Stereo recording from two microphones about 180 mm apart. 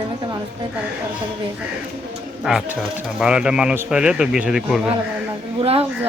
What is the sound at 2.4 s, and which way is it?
Speech, 5° right (ahead or behind).